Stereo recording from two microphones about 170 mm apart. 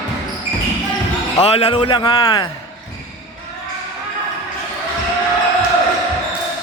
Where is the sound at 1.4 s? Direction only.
35° left (ahead or behind).